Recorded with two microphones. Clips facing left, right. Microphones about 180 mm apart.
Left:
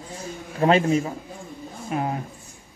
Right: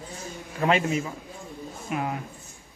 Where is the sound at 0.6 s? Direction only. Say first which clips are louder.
Left 5 dB; 35° left (ahead or behind).